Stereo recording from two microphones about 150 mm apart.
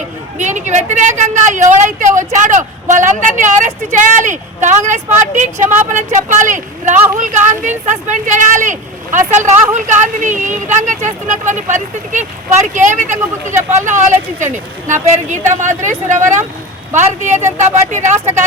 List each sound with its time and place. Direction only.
0.3 s a woman's voice: 55° right (ahead or behind)